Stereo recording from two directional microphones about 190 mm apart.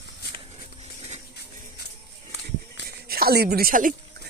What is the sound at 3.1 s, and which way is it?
Speech, 55° right (ahead or behind).